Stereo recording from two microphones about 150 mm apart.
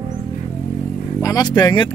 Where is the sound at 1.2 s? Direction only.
25° left (ahead or behind).